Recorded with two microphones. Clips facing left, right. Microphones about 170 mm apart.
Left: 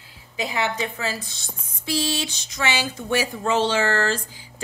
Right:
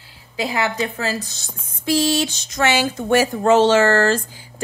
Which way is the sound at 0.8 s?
40° right (ahead or behind).